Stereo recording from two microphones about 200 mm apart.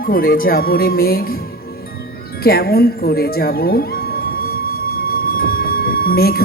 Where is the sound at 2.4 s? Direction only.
50° left (ahead or behind).